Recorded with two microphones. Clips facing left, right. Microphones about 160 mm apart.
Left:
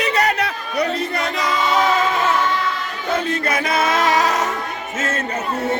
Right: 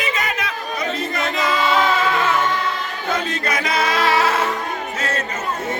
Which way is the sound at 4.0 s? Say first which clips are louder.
Even; 15° left (ahead or behind).